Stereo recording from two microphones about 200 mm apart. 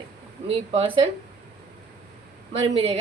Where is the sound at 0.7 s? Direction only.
25° right (ahead or behind).